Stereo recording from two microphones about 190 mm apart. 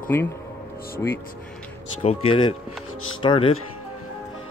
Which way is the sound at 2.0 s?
30° left (ahead or behind).